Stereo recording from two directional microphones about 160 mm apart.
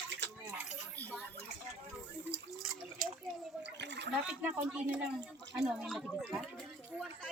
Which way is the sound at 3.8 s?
90° right.